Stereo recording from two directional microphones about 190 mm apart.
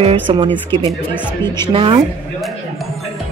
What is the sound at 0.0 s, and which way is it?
Speech, 25° right (ahead or behind).